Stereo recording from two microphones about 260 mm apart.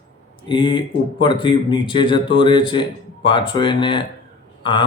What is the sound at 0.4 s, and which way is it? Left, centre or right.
Speech, centre.